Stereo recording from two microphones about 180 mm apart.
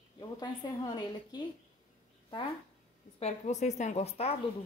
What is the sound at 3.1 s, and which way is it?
A woman's voice, 40° left (ahead or behind).